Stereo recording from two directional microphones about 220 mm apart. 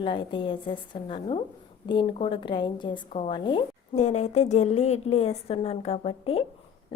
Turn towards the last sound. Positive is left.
turn(degrees=25)  # may be behind; listen again after turning